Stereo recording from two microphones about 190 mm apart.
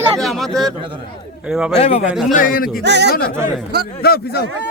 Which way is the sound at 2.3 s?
50° left (ahead or behind).